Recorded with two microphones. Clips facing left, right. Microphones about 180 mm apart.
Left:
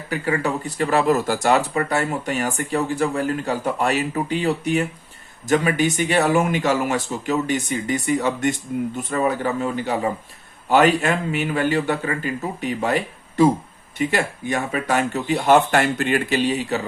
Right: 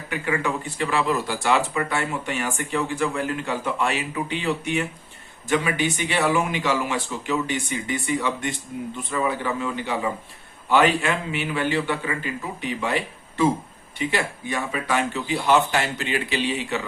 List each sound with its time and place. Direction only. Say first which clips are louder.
0.1 s speech: left 3 dB; 35° left (ahead or behind)